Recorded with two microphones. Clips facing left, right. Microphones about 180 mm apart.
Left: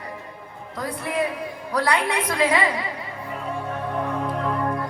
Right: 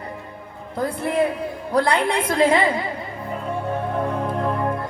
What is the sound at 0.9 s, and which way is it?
A woman's voice, 30° right (ahead or behind).